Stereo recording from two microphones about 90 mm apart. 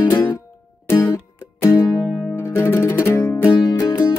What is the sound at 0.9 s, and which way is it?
Music, 35° left (ahead or behind).